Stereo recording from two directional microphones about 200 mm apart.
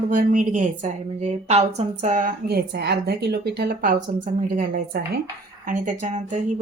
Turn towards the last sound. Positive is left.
turn(degrees=-40)  # may be behind; listen again after turning